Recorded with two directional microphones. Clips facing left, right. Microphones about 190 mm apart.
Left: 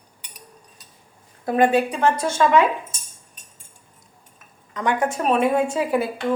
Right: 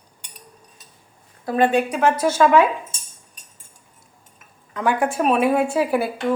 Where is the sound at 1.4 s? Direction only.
20° left (ahead or behind).